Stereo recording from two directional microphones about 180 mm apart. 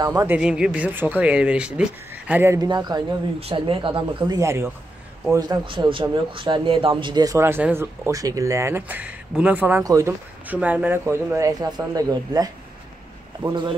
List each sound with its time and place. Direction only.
0.0 s speech: 20° right (ahead or behind)
0.4 s speech: 5° right (ahead or behind); by 13.7 s 20° right (ahead or behind)